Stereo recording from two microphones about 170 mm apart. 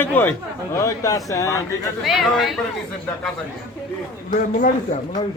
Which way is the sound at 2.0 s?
Centre (ahead or behind).